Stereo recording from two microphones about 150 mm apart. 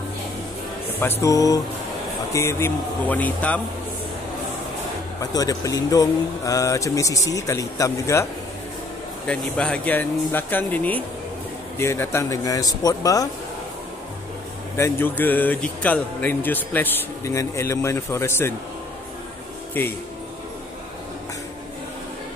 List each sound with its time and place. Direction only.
0.9 s speech: 15° left (ahead or behind)
5.2 s speech: 25° left (ahead or behind)
9.3 s speech: 5° left (ahead or behind); by 13.3 s 25° left (ahead or behind)
14.8 s speech: 15° left (ahead or behind)